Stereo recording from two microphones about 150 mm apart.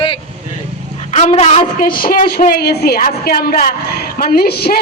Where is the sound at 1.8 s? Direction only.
75° left (ahead or behind); by 4.8 s 90° left.